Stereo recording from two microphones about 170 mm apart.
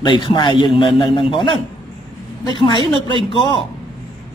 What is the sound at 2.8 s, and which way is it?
Speech, 30° right (ahead or behind).